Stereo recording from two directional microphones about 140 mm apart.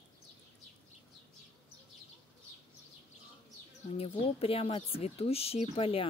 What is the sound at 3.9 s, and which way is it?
Speech, 45° left (ahead or behind).